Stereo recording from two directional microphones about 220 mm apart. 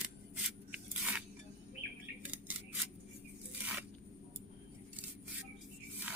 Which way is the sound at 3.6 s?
5° right (ahead or behind).